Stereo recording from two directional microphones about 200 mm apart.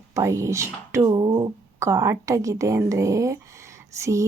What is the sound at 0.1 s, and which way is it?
Speech, 15° right (ahead or behind).